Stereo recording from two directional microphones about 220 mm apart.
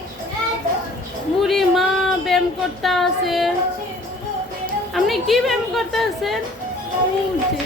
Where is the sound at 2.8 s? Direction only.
Centre (ahead or behind).